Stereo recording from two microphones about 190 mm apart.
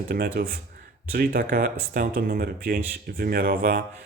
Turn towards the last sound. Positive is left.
turn(degrees=-50)  # may be behind; listen again after turning